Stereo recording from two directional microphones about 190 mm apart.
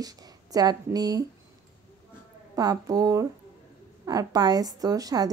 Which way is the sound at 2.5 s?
20° right (ahead or behind).